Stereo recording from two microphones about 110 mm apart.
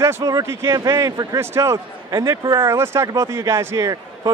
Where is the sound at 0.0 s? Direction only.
30° right (ahead or behind).